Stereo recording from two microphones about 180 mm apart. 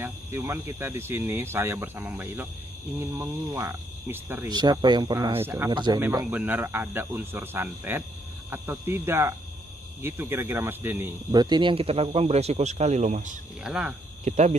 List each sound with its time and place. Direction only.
0.0 s speech: 15° right (ahead or behind)
4.5 s speech: 25° right (ahead or behind)
5.7 s speech: 25° right (ahead or behind)
5.9 s speech: 10° right (ahead or behind)
11.3 s speech: 25° right (ahead or behind); by 13.4 s 45° right (ahead or behind)
13.7 s speech: 5° right (ahead or behind)
14.2 s speech: 40° right (ahead or behind)